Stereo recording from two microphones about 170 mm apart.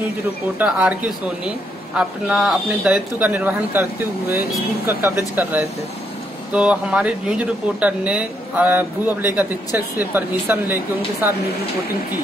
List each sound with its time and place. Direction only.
0.6 s speech: 5° right (ahead or behind)
2.0 s speech: 5° right (ahead or behind)
4.8 s speech: 10° right (ahead or behind)